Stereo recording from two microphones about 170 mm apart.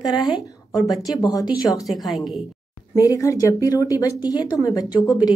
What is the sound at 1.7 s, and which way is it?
Speech, centre (ahead or behind).